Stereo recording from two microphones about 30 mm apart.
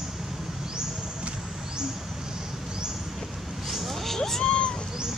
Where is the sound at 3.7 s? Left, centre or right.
Centre.